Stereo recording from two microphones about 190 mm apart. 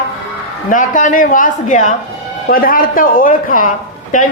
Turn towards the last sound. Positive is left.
turn(degrees=45)  # may be behind; listen again after turning